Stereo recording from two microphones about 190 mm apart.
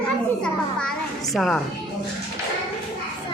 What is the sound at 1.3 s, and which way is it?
Speech, centre (ahead or behind).